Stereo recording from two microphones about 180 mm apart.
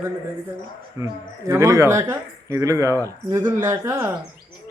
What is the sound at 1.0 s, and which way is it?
Speech, 15° right (ahead or behind).